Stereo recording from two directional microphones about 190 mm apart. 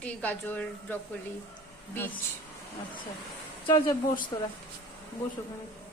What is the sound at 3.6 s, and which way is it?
Speech, 25° left (ahead or behind).